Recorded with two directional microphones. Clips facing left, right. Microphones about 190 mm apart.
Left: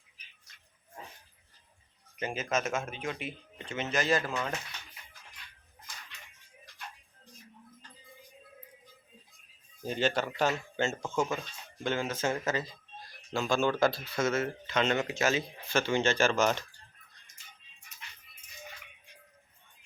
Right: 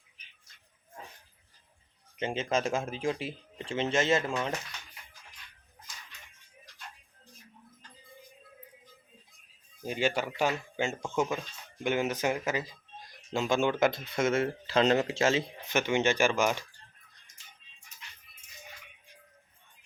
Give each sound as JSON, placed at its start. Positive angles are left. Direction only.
{"t": 2.1, "sound": "speech", "side_deg": -25}
{"t": 9.8, "sound": "speech", "side_deg": -10}